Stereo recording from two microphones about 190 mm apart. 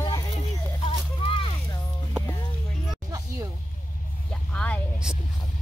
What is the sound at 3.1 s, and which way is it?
Music, 20° right (ahead or behind).